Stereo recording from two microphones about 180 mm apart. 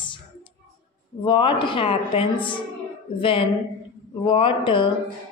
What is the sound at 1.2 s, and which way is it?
Female singing, 25° left (ahead or behind).